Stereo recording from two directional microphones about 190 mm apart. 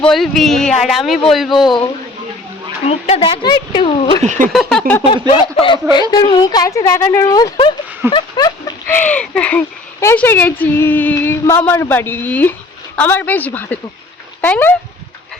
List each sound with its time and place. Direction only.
0.0 s speech: centre (ahead or behind)
2.8 s speech: 35° left (ahead or behind)
4.2 s speech: 40° right (ahead or behind)
4.7 s speech: 10° left (ahead or behind)
5.3 s speech: 30° left (ahead or behind)
8.1 s a sound: 20° left (ahead or behind)
9.0 s speech: 5° left (ahead or behind)